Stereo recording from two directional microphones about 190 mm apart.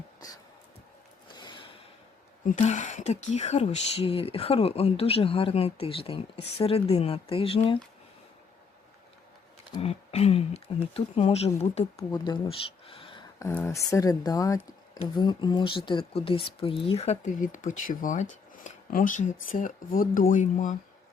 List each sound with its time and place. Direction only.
1.3 s a sound: 25° left (ahead or behind)
2.6 s speech: 40° left (ahead or behind)
9.7 s speech: 30° left (ahead or behind)
13.4 s speech: 15° left (ahead or behind); by 20.7 s 40° left (ahead or behind)